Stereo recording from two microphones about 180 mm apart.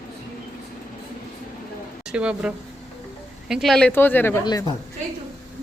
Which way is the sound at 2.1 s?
5° right (ahead or behind).